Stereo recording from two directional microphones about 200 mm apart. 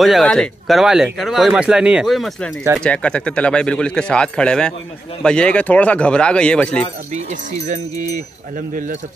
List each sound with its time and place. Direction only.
0.0 s speech: centre (ahead or behind)
7.2 s speech: 35° right (ahead or behind)